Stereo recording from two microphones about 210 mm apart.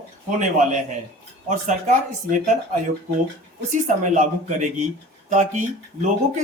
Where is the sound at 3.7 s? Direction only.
35° right (ahead or behind).